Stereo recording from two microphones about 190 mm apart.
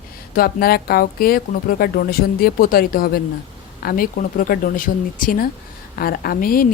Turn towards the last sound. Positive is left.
turn(degrees=50)  # may be behind; listen again after turning